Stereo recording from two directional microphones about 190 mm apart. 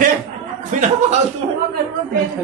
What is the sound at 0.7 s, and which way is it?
Speech, 40° right (ahead or behind).